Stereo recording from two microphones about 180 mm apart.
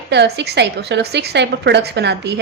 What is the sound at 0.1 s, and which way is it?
A woman's voice, 70° right (ahead or behind).